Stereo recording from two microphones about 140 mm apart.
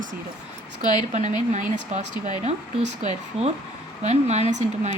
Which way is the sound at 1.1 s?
60° right (ahead or behind).